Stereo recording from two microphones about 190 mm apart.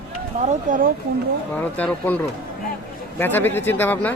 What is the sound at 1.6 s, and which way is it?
Speech, 10° left (ahead or behind).